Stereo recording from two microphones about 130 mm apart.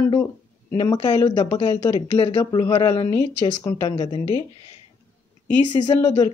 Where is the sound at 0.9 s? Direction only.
35° left (ahead or behind).